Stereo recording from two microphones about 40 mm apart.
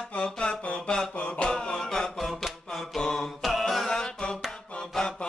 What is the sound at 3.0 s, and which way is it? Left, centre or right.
Mantra, centre.